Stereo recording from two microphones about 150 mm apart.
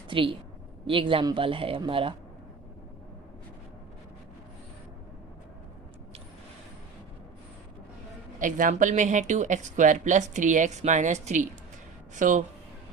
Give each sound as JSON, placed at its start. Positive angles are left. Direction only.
{"t": 0.1, "sound": "speech", "side_deg": -35}
{"t": 8.4, "sound": "speech", "side_deg": -60}